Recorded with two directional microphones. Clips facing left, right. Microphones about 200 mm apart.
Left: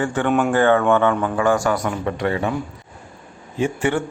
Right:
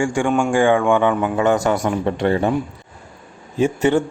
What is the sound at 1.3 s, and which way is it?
Speech, 20° right (ahead or behind).